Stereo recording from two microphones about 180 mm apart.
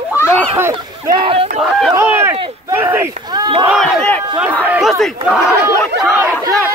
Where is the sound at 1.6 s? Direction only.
Centre (ahead or behind).